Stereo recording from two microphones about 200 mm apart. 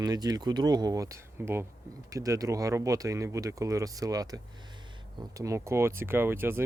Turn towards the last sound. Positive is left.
turn(degrees=-10)  # may be behind; listen again after turning